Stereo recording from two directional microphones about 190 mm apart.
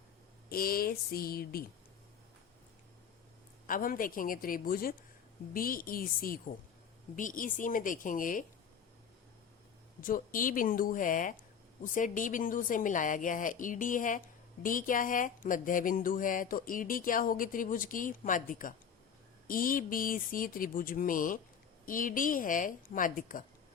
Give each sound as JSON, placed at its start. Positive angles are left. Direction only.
{"t": 0.5, "sound": "speech", "side_deg": 50}
{"t": 3.7, "sound": "speech", "side_deg": 50}
{"t": 10.0, "sound": "speech", "side_deg": 45}